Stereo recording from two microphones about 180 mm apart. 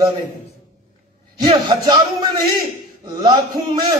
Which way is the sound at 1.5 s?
20° right (ahead or behind).